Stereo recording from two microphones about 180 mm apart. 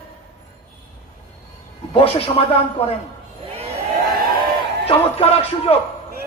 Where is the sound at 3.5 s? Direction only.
35° right (ahead or behind).